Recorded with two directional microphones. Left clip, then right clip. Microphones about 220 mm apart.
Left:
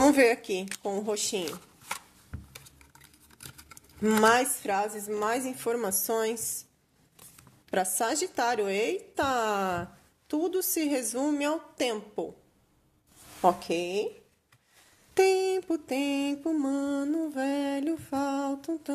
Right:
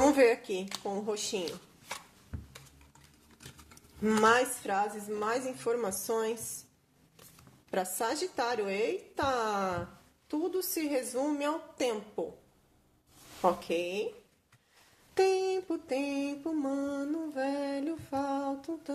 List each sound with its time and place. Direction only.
0.0 s speech: 35° left (ahead or behind)
2.3 s dishes: 10° left (ahead or behind)
4.0 s speech: 40° left (ahead or behind)
8.0 s speech: 40° left (ahead or behind)
13.4 s speech: 40° left (ahead or behind)
15.1 s speech: 40° left (ahead or behind)